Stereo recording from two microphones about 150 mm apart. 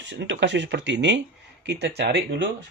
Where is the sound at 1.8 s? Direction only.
90° right.